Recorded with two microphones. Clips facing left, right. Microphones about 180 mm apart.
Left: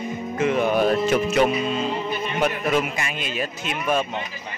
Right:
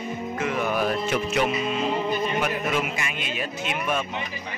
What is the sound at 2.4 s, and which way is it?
A man's voice, 35° left (ahead or behind).